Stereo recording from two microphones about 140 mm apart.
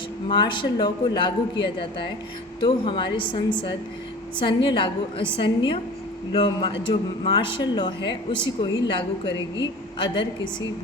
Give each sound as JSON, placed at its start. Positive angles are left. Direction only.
{"t": 0.3, "sound": "a man's voice", "side_deg": 35}